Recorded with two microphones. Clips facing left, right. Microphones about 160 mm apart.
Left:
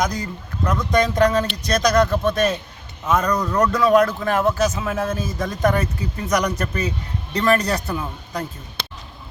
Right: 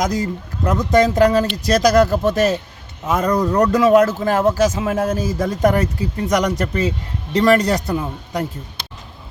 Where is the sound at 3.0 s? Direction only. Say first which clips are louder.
Right 3 dB; 20° right (ahead or behind).